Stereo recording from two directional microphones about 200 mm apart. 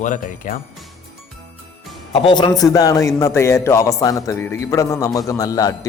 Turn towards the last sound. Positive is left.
turn(degrees=15)  # may be behind; listen again after turning